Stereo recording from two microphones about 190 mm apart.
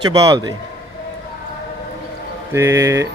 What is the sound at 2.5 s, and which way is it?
Speech, 15° right (ahead or behind).